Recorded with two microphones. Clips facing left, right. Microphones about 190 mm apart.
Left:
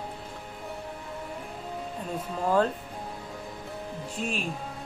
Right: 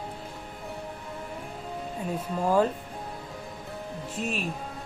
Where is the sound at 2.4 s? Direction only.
10° right (ahead or behind).